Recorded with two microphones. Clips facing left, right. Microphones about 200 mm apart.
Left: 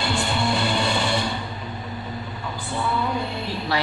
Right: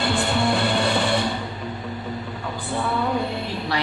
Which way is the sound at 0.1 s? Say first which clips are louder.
Right 2 dB; 55° right (ahead or behind).